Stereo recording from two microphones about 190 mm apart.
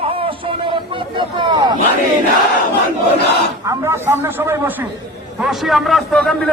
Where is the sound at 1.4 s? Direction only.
25° right (ahead or behind).